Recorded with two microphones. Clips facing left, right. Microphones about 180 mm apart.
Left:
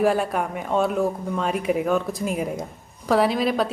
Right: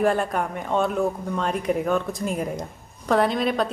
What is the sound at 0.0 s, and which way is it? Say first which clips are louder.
A woman's voice: left 1 dB; 5° left (ahead or behind).